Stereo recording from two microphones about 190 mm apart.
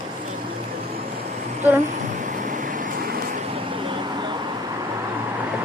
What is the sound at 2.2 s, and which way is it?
Vehicle, 45° right (ahead or behind).